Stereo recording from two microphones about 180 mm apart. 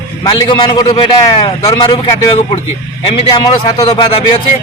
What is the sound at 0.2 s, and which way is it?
A man's voice, 25° left (ahead or behind).